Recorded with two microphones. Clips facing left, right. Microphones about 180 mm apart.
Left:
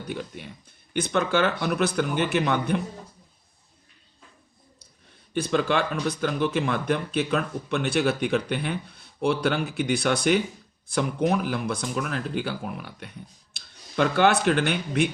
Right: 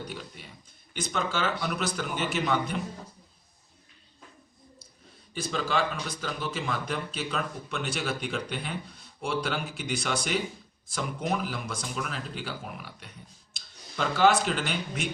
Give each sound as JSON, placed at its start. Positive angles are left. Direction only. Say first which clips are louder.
{"t": 0.9, "sound": "speech", "louder": "left 7 dB", "side_deg": 60}
{"t": 5.3, "sound": "speech", "louder": "left 6 dB", "side_deg": 60}